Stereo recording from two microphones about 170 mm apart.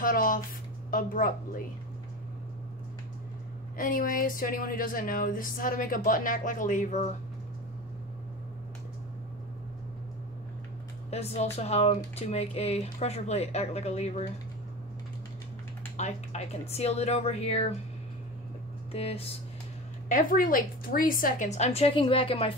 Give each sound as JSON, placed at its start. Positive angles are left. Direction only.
{"t": 0.0, "sound": "a woman's voice", "side_deg": 55}
{"t": 3.7, "sound": "a woman's voice", "side_deg": 55}
{"t": 11.1, "sound": "speech", "side_deg": 40}
{"t": 16.0, "sound": "speech", "side_deg": 40}
{"t": 18.9, "sound": "speech", "side_deg": 35}
{"t": 20.1, "sound": "a woman's voice", "side_deg": 50}